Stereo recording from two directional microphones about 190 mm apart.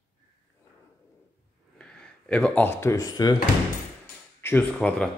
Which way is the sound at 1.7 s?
5° left (ahead or behind).